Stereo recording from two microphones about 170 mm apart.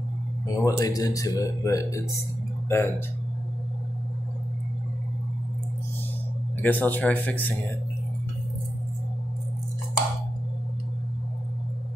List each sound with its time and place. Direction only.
0.5 s speech: 20° left (ahead or behind)
6.6 s speech: 10° left (ahead or behind)